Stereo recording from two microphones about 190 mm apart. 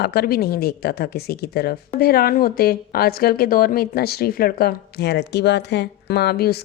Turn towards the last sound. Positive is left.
turn(degrees=55)  # may be behind; listen again after turning